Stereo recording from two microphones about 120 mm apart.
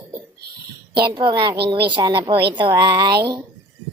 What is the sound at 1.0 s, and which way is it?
A woman's voice, 40° right (ahead or behind).